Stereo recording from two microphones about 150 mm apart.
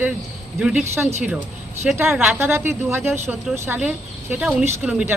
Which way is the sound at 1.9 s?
10° right (ahead or behind).